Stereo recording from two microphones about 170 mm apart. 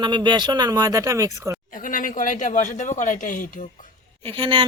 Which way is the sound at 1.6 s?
55° left (ahead or behind).